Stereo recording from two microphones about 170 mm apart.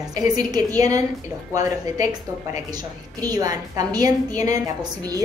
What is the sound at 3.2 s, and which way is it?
A woman's voice, 20° right (ahead or behind).